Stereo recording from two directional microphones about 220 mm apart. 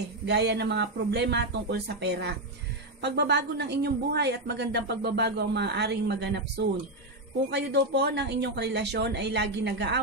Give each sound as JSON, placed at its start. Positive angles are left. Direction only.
{"t": 0.3, "sound": "speech", "side_deg": -50}